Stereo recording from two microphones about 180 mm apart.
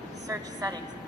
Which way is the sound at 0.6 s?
20° right (ahead or behind).